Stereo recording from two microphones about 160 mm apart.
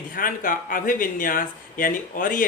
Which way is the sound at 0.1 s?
60° left (ahead or behind).